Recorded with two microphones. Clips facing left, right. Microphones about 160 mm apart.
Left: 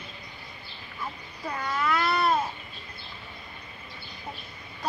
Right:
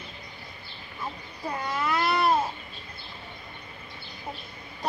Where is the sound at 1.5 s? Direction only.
25° right (ahead or behind).